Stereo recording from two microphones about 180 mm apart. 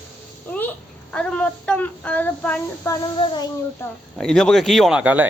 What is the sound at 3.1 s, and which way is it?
Child singing, 25° left (ahead or behind).